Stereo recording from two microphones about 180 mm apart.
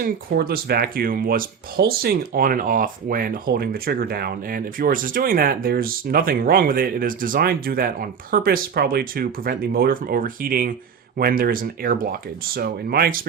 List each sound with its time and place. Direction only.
0.0 s speech: 55° right (ahead or behind)